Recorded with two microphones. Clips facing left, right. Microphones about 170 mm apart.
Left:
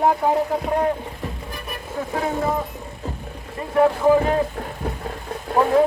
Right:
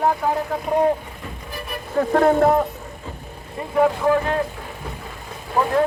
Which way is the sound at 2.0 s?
60° right (ahead or behind).